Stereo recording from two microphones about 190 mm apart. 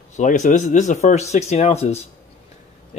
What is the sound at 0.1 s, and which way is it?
Speech, 40° left (ahead or behind).